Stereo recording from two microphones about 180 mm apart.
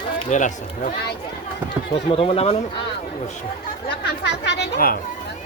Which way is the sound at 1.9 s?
30° left (ahead or behind).